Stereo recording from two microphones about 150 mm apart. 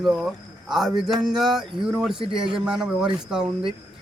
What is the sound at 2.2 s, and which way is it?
Speech, 35° right (ahead or behind).